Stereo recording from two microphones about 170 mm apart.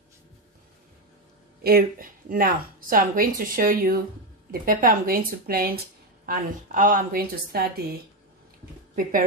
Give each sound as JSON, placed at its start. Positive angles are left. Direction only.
{"t": 1.6, "sound": "speech", "side_deg": -60}